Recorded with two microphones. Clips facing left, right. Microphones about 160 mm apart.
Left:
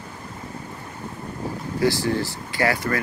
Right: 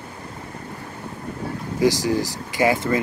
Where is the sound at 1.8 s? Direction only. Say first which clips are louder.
Right 2 dB; 15° right (ahead or behind).